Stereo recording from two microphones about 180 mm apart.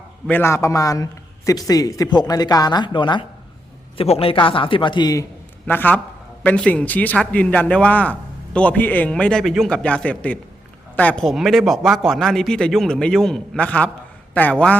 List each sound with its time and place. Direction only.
0.3 s a man's voice: 15° left (ahead or behind)
5.6 s a man's voice: 10° left (ahead or behind)